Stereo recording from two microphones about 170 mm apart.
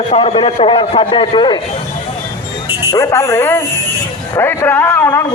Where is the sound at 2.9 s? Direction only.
15° left (ahead or behind).